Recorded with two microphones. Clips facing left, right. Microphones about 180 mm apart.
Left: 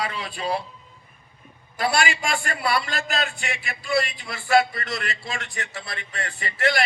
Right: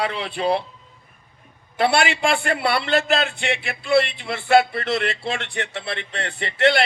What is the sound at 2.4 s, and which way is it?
Speech, 65° right (ahead or behind).